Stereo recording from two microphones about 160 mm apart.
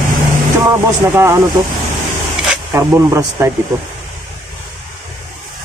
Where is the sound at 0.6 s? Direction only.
15° right (ahead or behind).